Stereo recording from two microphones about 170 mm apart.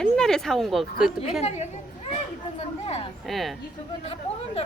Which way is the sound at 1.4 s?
40° left (ahead or behind).